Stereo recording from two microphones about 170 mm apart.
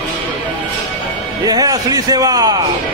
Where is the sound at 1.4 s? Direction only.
20° right (ahead or behind).